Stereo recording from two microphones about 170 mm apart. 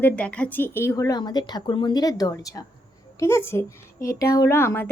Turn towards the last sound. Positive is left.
turn(degrees=15)  # may be behind; listen again after turning